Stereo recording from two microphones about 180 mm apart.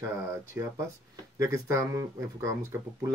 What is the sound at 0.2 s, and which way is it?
Speech, 15° right (ahead or behind).